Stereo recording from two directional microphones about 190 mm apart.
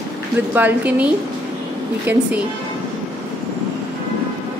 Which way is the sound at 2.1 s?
10° right (ahead or behind).